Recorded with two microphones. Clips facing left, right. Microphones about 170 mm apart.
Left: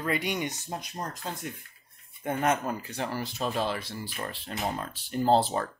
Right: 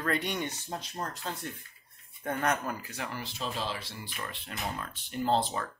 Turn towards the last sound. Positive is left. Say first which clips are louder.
# left 5 dB
turn(degrees=35)  # may be behind; listen again after turning